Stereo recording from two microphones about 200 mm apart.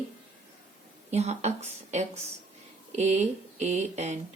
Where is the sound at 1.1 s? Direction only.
35° right (ahead or behind).